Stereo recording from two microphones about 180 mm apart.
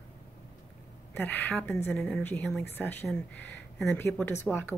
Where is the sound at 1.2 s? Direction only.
10° left (ahead or behind).